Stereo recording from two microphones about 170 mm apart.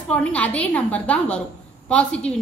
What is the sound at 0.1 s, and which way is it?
A woman's voice, 5° left (ahead or behind).